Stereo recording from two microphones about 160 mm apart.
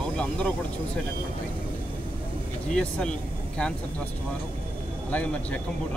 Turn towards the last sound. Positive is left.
turn(degrees=10)  # may be behind; listen again after turning